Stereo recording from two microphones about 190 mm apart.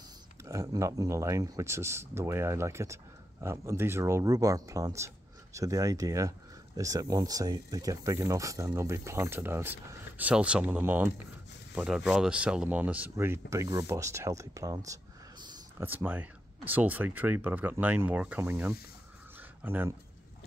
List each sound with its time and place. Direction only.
0.5 s speech: 15° right (ahead or behind)